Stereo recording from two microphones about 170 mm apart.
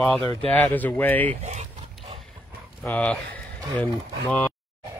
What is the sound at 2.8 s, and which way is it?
Speech, 10° left (ahead or behind).